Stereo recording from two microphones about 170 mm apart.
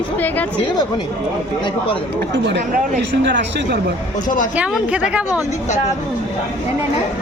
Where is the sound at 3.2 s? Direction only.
90° right.